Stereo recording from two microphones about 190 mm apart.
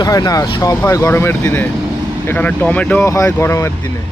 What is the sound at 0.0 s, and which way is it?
Speech, 20° left (ahead or behind).